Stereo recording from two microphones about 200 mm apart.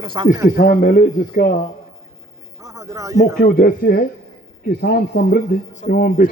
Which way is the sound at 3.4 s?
45° left (ahead or behind).